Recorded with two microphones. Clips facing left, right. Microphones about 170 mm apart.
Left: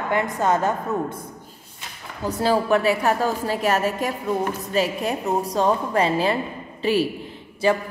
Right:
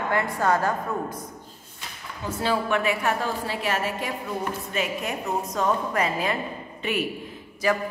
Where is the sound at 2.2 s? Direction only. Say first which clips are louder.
Left 5 dB; 40° left (ahead or behind).